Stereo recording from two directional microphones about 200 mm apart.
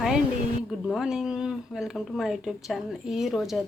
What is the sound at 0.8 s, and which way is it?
Speech, centre (ahead or behind).